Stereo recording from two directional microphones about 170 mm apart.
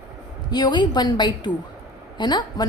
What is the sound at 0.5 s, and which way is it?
A woman's voice, 25° left (ahead or behind).